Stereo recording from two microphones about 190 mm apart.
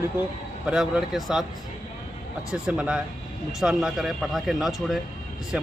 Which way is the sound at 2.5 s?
5° right (ahead or behind).